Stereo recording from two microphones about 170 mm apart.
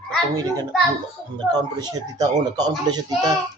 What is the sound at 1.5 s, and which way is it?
Speech, 25° right (ahead or behind).